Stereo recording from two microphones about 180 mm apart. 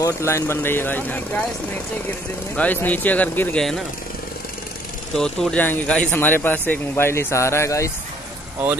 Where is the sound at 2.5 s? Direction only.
10° left (ahead or behind).